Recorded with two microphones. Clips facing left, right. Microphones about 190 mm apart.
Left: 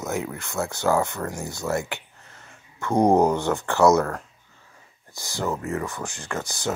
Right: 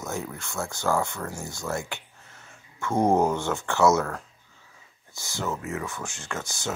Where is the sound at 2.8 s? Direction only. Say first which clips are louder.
Left 4 dB; 15° left (ahead or behind).